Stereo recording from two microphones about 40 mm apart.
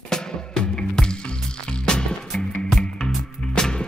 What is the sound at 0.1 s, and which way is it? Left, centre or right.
Music, centre.